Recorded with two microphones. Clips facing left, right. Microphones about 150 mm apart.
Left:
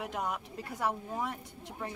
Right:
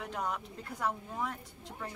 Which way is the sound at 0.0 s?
5° left (ahead or behind).